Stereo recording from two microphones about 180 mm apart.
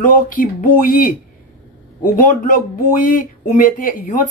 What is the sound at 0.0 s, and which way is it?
Speech, 50° left (ahead or behind).